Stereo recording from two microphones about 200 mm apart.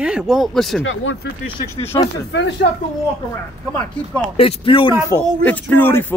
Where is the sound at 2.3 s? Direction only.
60° left (ahead or behind).